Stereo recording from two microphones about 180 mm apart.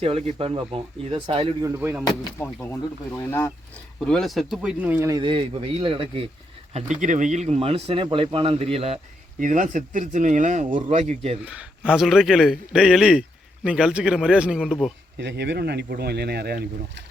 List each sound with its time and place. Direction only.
0.0 s speech: 30° right (ahead or behind)
1.6 s speech: 15° right (ahead or behind)
3.2 s speech: 15° left (ahead or behind)
4.0 s speech: centre (ahead or behind); by 6.2 s 30° right (ahead or behind)
7.0 s speech: 45° right (ahead or behind)
9.4 s speech: 45° right (ahead or behind)
11.4 s a man's voice: 5° right (ahead or behind)
15.2 s speech: 75° right (ahead or behind)